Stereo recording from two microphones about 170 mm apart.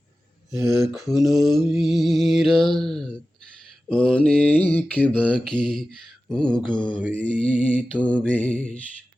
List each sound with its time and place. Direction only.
0.6 s speech: 15° right (ahead or behind)
0.9 s mantra: centre (ahead or behind)